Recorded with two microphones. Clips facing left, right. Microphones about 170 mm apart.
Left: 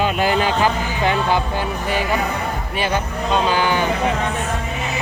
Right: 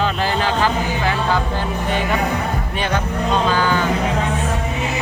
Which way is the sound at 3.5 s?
15° left (ahead or behind).